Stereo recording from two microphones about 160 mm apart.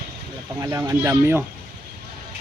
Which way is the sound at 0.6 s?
20° right (ahead or behind).